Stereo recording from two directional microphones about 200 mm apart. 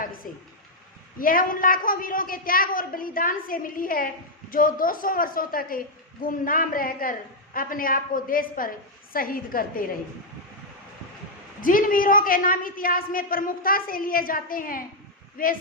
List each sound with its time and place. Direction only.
0.2 s a woman's voice: 45° left (ahead or behind)
11.6 s a woman's voice: 45° left (ahead or behind)